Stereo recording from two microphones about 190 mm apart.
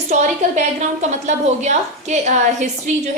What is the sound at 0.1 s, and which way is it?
Speech, 40° right (ahead or behind).